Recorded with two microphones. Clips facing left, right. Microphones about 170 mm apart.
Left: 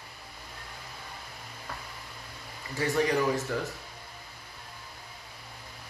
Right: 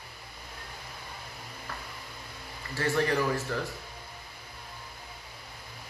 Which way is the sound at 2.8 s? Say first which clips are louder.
Left 1 dB; 15° left (ahead or behind).